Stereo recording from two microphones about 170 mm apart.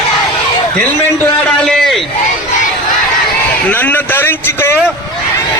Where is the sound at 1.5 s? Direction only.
5° left (ahead or behind).